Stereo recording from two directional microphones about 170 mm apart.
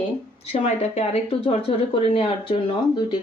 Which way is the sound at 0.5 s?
40° left (ahead or behind).